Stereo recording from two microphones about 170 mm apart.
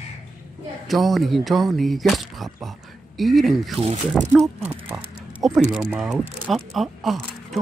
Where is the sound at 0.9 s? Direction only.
Centre (ahead or behind).